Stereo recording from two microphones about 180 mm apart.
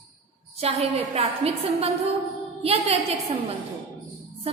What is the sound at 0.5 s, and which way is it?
A woman's voice, 35° right (ahead or behind).